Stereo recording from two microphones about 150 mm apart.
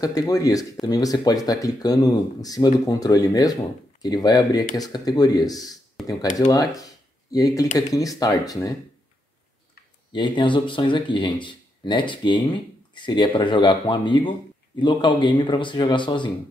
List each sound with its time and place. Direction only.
0.0 s speech: 25° left (ahead or behind)
10.1 s speech: 30° left (ahead or behind)